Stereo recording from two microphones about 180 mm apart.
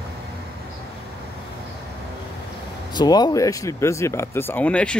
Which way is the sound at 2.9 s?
25° left (ahead or behind).